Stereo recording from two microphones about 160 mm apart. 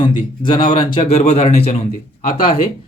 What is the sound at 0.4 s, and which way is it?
Speech, 30° left (ahead or behind).